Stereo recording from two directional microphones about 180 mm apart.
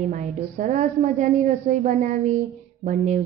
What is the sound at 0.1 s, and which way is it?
A woman's voice, 45° right (ahead or behind).